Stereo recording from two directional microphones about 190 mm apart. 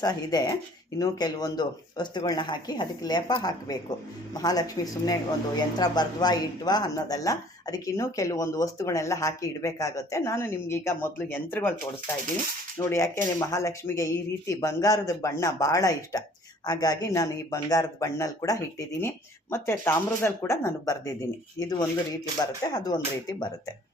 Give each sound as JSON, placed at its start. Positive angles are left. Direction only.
{"t": 0.0, "sound": "speech", "side_deg": 20}
{"t": 12.8, "sound": "speech", "side_deg": 15}